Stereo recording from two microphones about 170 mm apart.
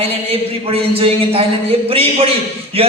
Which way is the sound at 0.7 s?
35° right (ahead or behind).